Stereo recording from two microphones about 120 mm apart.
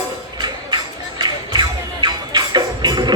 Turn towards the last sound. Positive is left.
turn(degrees=-35)  # may be behind; listen again after turning